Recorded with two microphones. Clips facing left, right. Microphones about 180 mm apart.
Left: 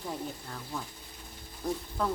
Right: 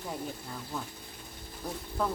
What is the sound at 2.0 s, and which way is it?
Speech, 5° right (ahead or behind).